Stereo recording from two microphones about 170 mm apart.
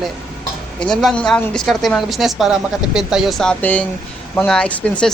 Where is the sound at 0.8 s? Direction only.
5° left (ahead or behind).